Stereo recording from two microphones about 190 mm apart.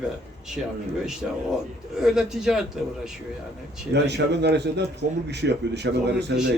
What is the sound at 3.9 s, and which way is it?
A man's voice, 65° right (ahead or behind).